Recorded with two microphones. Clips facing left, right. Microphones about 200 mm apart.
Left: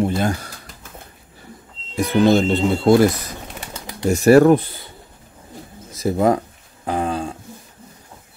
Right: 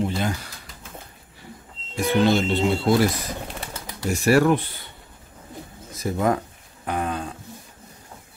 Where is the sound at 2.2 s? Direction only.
45° left (ahead or behind).